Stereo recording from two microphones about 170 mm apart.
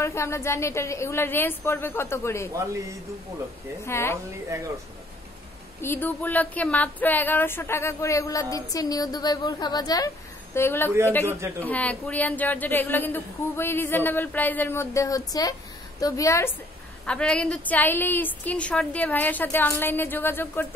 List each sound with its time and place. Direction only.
0.0 s speech: 15° left (ahead or behind)
2.5 s a man's voice: 20° right (ahead or behind)
3.8 s speech: 15° left (ahead or behind)
5.8 s speech: 10° left (ahead or behind)
11.2 s speech: 15° right (ahead or behind)
11.6 s a woman's voice: 10° left (ahead or behind)
17.0 s speech: 5° left (ahead or behind)